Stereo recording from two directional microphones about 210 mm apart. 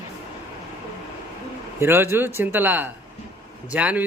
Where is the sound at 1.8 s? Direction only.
10° right (ahead or behind).